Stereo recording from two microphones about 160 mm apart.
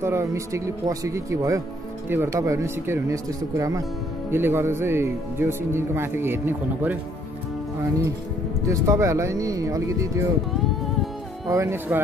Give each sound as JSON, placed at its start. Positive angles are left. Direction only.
{"t": 0.0, "sound": "speech", "side_deg": -15}
{"t": 8.6, "sound": "speech", "side_deg": -20}
{"t": 11.5, "sound": "speech", "side_deg": -15}